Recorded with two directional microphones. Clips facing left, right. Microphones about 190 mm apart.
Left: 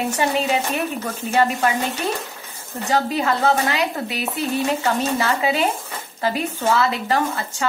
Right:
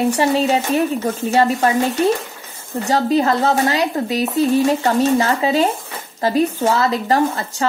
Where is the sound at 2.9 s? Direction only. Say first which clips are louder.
Right 4 dB; 35° right (ahead or behind).